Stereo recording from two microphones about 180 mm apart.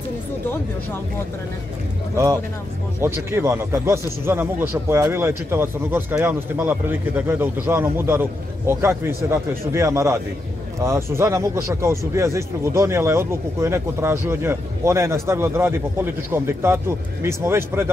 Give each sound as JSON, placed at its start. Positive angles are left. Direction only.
{"t": 2.1, "sound": "a man's voice", "side_deg": -15}